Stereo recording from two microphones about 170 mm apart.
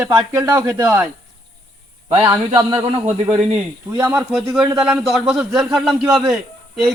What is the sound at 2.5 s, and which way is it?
Speech, 25° right (ahead or behind).